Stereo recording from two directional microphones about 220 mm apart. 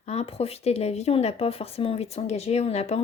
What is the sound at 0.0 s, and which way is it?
Speech, 30° left (ahead or behind).